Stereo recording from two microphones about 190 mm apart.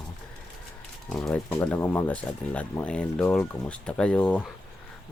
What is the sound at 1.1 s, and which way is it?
Speech, centre (ahead or behind).